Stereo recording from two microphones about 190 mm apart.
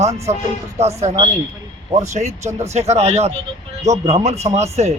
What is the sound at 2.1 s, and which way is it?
Speech, 35° right (ahead or behind).